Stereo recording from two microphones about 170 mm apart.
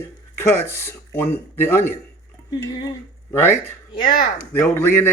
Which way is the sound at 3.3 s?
15° left (ahead or behind).